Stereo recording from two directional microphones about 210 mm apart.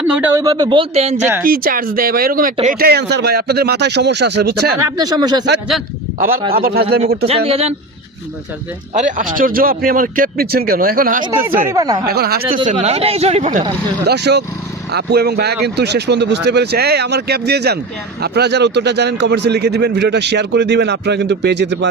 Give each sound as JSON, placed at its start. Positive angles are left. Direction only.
{"t": 0.1, "sound": "speech", "side_deg": -10}
{"t": 0.4, "sound": "speech", "side_deg": -20}
{"t": 1.2, "sound": "speech", "side_deg": -10}
{"t": 1.5, "sound": "speech", "side_deg": -45}
{"t": 4.8, "sound": "speech", "side_deg": -20}
{"t": 6.1, "sound": "speech", "side_deg": -40}
{"t": 7.3, "sound": "speech", "side_deg": -30}
{"t": 8.9, "sound": "speech", "side_deg": -35}
{"t": 11.7, "sound": "speech", "side_deg": -15}
{"t": 12.0, "sound": "speech", "side_deg": -50}
{"t": 12.6, "sound": "speech", "side_deg": -30}
{"t": 14.1, "sound": "speech", "side_deg": -50}